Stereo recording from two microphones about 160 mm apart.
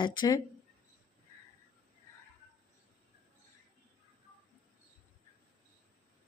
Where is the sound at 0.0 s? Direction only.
25° left (ahead or behind).